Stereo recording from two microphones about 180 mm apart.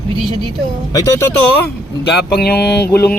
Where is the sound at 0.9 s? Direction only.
20° left (ahead or behind).